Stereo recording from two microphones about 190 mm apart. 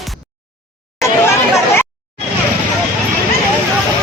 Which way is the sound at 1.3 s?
15° left (ahead or behind).